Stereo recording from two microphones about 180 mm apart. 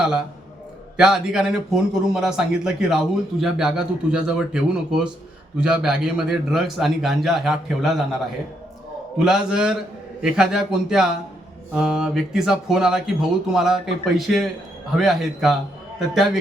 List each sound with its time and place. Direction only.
0.0 s speech: 5° right (ahead or behind)
9.1 s speech: 5° right (ahead or behind)